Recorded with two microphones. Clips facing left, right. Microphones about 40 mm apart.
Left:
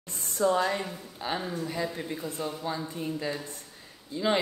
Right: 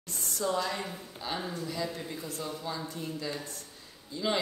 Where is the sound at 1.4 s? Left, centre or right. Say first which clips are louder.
Left 3 dB; centre.